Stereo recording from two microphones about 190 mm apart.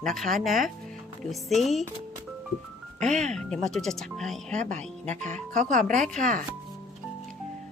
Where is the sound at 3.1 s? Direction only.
40° right (ahead or behind).